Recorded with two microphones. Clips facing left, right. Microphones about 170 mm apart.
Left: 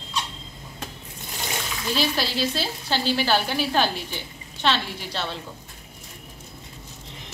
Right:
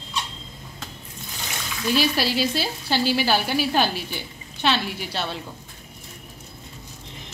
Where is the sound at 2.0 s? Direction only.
10° right (ahead or behind).